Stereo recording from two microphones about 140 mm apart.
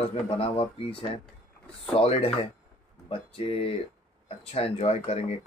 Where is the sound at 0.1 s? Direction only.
45° left (ahead or behind).